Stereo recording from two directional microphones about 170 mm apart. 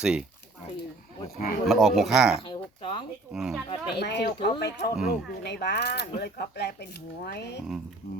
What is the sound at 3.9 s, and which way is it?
Speech, 80° left.